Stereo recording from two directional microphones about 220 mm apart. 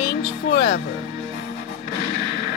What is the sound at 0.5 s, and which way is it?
Music, 50° left (ahead or behind).